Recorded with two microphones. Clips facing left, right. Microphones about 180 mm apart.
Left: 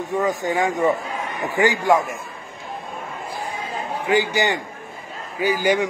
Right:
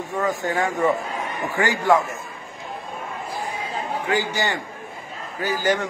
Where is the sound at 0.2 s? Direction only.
15° left (ahead or behind).